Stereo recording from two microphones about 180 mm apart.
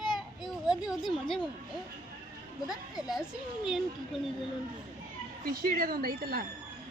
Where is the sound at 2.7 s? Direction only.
Centre (ahead or behind).